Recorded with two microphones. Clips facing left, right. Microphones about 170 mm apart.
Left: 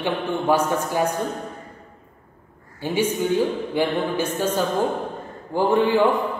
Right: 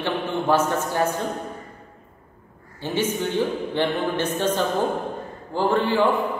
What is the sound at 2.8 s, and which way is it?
A man's voice, 10° left (ahead or behind).